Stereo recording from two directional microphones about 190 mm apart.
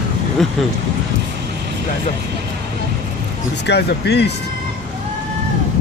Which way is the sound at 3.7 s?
60° left (ahead or behind).